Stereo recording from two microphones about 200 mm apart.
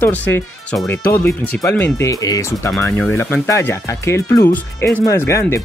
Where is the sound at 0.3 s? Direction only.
10° left (ahead or behind).